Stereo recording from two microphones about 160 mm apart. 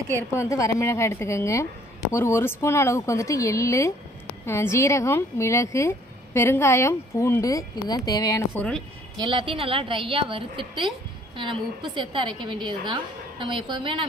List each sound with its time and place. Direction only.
0.4 s speech: 20° left (ahead or behind)
9.2 s a woman's voice: 30° right (ahead or behind)
11.9 s a woman's voice: 30° right (ahead or behind)